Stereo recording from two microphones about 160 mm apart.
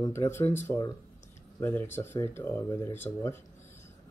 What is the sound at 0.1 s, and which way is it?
Speech, 15° left (ahead or behind).